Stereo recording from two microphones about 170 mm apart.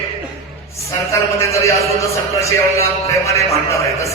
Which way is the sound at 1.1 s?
15° left (ahead or behind).